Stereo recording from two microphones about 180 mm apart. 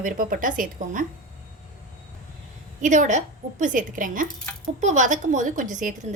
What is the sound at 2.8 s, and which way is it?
A woman's voice, 45° right (ahead or behind).